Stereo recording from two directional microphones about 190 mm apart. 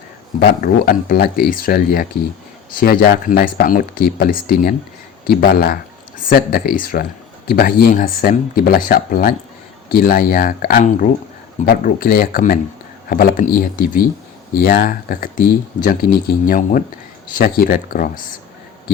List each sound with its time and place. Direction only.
0.3 s speech: 50° left (ahead or behind)